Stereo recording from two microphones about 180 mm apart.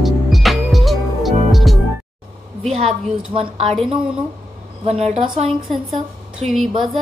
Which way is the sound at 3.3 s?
30° right (ahead or behind).